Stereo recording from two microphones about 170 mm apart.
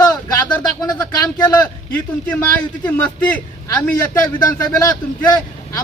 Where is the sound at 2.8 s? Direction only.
10° left (ahead or behind).